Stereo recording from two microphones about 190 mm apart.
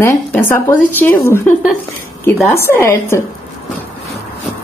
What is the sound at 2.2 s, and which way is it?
Speech, 10° left (ahead or behind).